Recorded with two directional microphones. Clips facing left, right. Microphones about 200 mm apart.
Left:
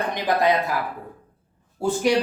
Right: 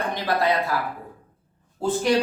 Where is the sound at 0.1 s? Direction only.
15° left (ahead or behind).